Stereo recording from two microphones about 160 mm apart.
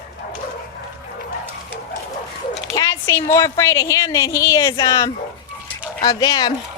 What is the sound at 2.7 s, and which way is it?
Speech, 20° left (ahead or behind).